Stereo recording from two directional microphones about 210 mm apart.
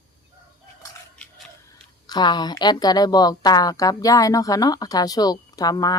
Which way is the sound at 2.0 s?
20° left (ahead or behind).